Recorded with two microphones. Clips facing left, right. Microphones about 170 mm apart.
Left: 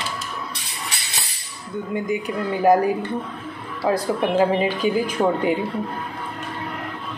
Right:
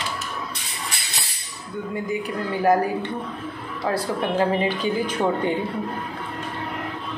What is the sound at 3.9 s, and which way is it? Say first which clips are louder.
Speech: left 3 dB; 15° left (ahead or behind).